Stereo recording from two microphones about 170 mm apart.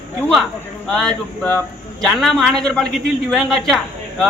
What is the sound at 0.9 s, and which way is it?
A man's voice, 5° left (ahead or behind).